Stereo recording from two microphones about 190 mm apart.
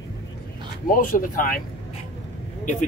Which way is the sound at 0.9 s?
45° left (ahead or behind).